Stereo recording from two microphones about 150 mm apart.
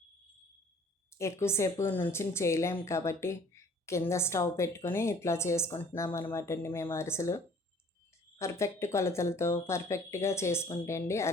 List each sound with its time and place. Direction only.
1.1 s a woman's voice: 20° left (ahead or behind)